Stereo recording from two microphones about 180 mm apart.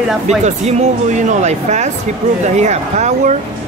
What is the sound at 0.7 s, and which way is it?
Speech, 40° right (ahead or behind).